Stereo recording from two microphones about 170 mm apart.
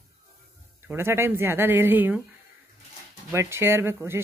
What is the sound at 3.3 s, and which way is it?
Speech, 15° right (ahead or behind).